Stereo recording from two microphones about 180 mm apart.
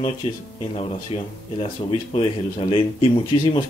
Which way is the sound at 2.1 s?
30° left (ahead or behind).